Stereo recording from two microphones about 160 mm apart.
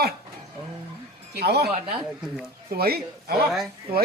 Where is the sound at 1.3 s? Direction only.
85° right.